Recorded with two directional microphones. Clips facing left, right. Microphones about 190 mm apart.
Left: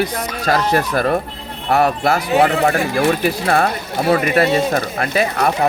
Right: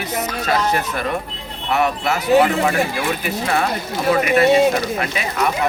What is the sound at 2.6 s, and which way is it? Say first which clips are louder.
Speech: left 4 dB; 50° left (ahead or behind).